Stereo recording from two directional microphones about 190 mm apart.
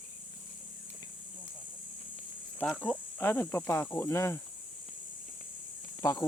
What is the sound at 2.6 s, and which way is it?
Speech, 5° left (ahead or behind).